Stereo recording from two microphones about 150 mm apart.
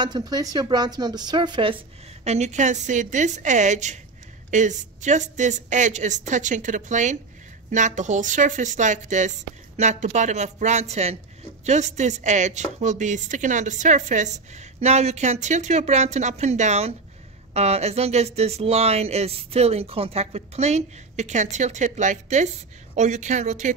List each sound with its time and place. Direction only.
0.0 s speech: 30° right (ahead or behind)
2.2 s a woman's voice: 50° right (ahead or behind)